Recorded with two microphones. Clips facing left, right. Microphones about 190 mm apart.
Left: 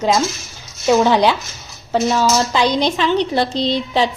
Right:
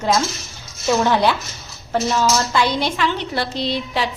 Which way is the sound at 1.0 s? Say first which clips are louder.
Left 3 dB; 15° left (ahead or behind).